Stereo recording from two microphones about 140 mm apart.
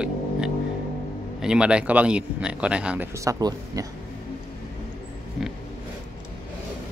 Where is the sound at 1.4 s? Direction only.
5° right (ahead or behind).